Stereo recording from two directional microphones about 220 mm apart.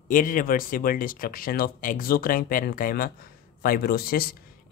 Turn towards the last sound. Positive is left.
turn(degrees=45)  # may be behind; listen again after turning